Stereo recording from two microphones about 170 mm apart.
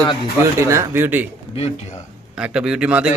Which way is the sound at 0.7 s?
15° right (ahead or behind).